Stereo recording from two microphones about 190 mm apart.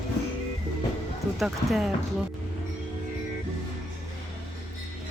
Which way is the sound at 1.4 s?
Centre (ahead or behind).